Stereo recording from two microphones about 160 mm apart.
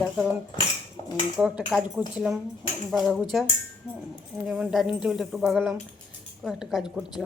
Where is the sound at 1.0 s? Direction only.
30° left (ahead or behind).